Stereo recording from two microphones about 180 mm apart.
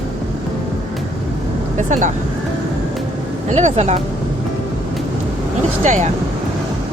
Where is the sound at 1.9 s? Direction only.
45° right (ahead or behind).